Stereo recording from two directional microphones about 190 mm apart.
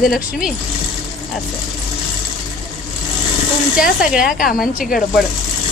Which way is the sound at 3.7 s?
50° left (ahead or behind).